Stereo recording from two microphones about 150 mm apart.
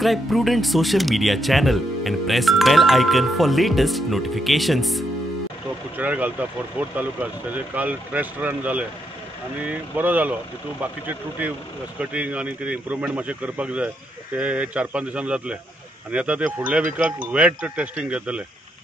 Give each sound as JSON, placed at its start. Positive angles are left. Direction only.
{"t": 0.0, "sound": "speech", "side_deg": 0}
{"t": 5.9, "sound": "speech", "side_deg": -10}